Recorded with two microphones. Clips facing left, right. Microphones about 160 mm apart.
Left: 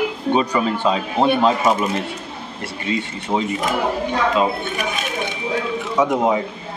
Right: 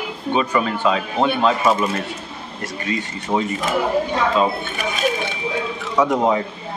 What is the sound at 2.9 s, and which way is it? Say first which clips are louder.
Speech: left 2 dB; 30° left (ahead or behind).